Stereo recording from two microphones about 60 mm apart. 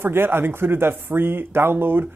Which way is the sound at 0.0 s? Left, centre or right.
Right.